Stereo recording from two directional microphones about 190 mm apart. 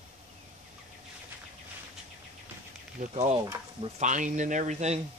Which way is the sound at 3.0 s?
40° right (ahead or behind).